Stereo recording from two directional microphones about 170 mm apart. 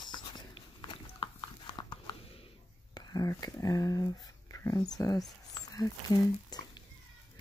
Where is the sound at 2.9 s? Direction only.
20° left (ahead or behind).